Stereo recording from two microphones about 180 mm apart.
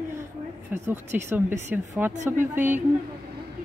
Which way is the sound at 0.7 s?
10° right (ahead or behind).